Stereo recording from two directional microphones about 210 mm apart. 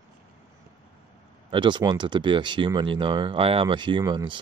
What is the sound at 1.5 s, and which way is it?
Speech, 20° right (ahead or behind).